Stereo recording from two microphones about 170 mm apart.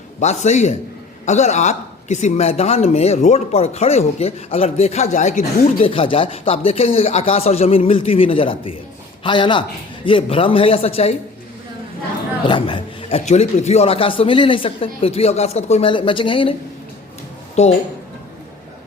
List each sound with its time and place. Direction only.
0.2 s a man's voice: 45° left (ahead or behind)
5.8 s a man's voice: 30° left (ahead or behind)
12.5 s speech: 30° left (ahead or behind)
17.6 s speech: 40° left (ahead or behind)